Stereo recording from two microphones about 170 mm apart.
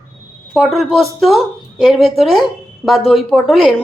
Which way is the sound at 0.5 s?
Centre (ahead or behind).